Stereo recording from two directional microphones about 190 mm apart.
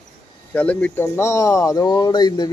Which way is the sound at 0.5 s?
5° left (ahead or behind).